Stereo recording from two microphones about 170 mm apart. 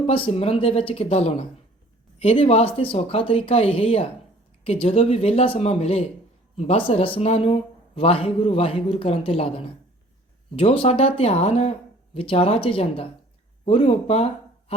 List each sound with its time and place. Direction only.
0.1 s speech: 35° left (ahead or behind)